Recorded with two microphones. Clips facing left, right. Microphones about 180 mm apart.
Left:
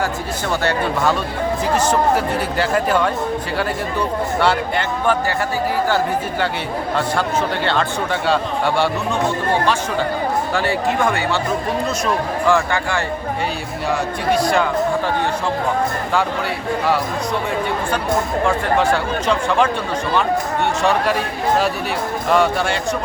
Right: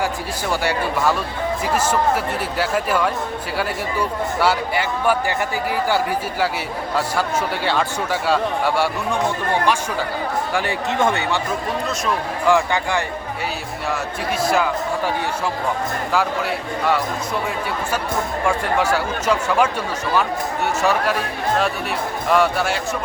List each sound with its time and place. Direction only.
0.6 s speech: 10° right (ahead or behind)
4.4 s speech: 5° right (ahead or behind)
6.9 s speech: 5° right (ahead or behind)
10.5 s speech: 15° right (ahead or behind)
12.5 s speech: 15° right (ahead or behind)
13.9 s speech: centre (ahead or behind)
18.4 s speech: 10° right (ahead or behind)
20.8 s speech: centre (ahead or behind)
22.3 s speech: centre (ahead or behind)